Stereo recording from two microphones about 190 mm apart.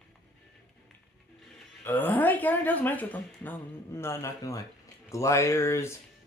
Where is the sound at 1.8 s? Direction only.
10° left (ahead or behind).